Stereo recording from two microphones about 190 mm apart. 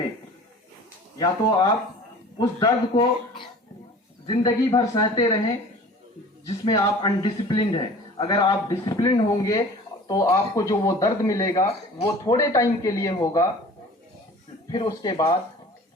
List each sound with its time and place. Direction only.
1.2 s a man's voice: 20° left (ahead or behind)
6.4 s a man's voice: 20° left (ahead or behind)
14.7 s a man's voice: 20° left (ahead or behind)